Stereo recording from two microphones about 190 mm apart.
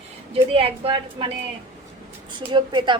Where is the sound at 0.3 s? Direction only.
30° right (ahead or behind).